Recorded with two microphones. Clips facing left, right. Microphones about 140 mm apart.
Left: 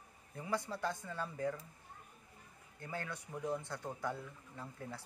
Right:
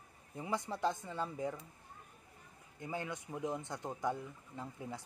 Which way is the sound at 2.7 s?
15° right (ahead or behind).